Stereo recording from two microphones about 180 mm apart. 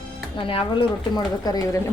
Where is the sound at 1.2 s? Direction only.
20° left (ahead or behind).